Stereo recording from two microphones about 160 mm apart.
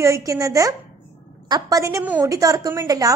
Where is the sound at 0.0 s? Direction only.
20° right (ahead or behind).